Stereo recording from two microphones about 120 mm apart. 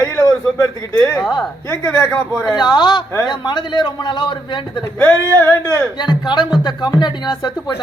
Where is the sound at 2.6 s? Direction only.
40° left (ahead or behind).